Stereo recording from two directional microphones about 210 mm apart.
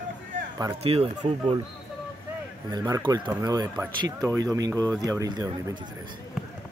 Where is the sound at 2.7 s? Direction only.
20° right (ahead or behind).